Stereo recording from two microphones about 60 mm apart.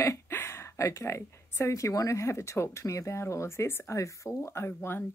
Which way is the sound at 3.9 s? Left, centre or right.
Left.